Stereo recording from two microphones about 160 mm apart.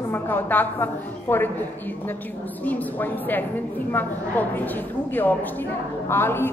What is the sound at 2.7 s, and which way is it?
A woman's voice, 10° left (ahead or behind).